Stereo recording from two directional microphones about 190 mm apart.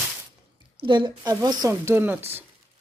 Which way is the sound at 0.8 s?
25° right (ahead or behind).